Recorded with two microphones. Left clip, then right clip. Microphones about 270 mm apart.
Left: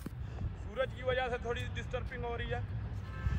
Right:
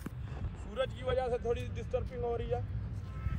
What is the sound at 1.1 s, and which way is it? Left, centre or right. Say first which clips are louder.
Vehicle: right 2 dB; left.